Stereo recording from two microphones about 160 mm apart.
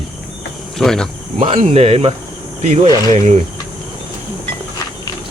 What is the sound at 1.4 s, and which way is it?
Speech, 40° right (ahead or behind).